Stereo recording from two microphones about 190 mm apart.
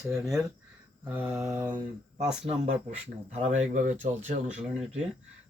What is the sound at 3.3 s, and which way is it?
Speech, 40° right (ahead or behind).